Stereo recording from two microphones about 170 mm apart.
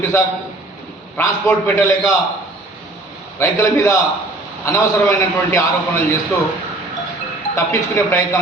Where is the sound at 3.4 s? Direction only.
15° left (ahead or behind).